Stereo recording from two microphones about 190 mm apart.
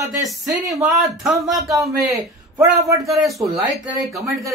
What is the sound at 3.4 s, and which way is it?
Speech, centre (ahead or behind).